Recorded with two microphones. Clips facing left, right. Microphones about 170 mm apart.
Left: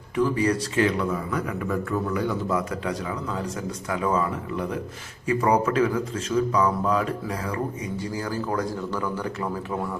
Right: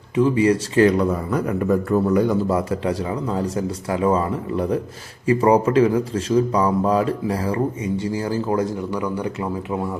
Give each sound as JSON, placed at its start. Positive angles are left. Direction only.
{"t": 0.2, "sound": "speech", "side_deg": -20}
{"t": 0.8, "sound": "a man's voice", "side_deg": -40}